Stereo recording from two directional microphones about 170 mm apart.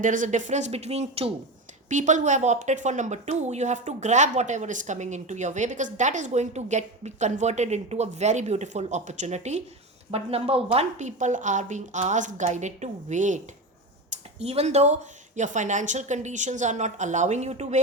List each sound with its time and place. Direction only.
0.0 s a woman's voice: 50° right (ahead or behind)